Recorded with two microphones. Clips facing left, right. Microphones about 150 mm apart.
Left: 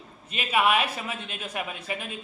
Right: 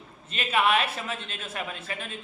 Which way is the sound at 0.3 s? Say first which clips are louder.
Left 1 dB; 10° left (ahead or behind).